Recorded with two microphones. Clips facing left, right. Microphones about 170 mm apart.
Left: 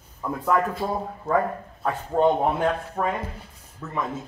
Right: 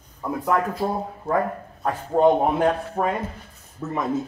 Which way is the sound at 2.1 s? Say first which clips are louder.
Right 3 dB; 30° right (ahead or behind).